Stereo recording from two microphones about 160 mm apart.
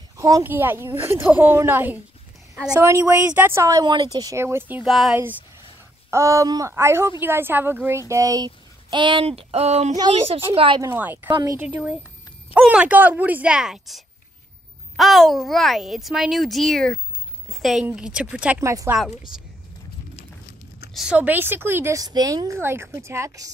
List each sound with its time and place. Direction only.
0.2 s a woman's voice: 15° right (ahead or behind)
4.8 s a child's voice: centre (ahead or behind)
5.1 s a woman's voice: 15° right (ahead or behind); by 9.9 s 40° right (ahead or behind)
9.9 s a child's voice: 30° right (ahead or behind)
11.0 s a woman's voice: 10° right (ahead or behind)
11.2 s speech: 25° right (ahead or behind)
11.5 s a woman's voice: 10° right (ahead or behind)
18.6 s a woman's voice: 20° right (ahead or behind)
20.9 s a woman's voice: 5° right (ahead or behind); by 23.5 s 20° right (ahead or behind)